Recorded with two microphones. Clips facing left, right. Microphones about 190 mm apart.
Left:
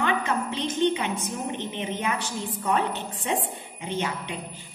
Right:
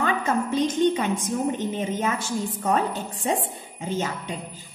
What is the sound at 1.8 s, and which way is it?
Speech, 40° right (ahead or behind).